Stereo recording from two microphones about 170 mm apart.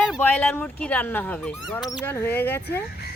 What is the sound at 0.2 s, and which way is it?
Speech, 10° left (ahead or behind).